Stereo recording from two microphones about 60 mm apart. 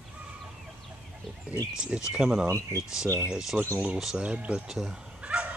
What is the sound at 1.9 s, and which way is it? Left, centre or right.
Speech, centre.